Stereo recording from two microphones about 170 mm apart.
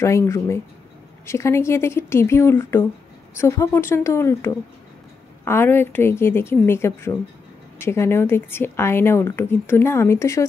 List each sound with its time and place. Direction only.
0.0 s a woman's voice: 15° left (ahead or behind)